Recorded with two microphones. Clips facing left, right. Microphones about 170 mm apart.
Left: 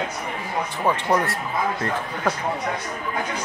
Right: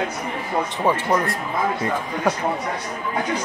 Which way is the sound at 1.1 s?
Centre (ahead or behind).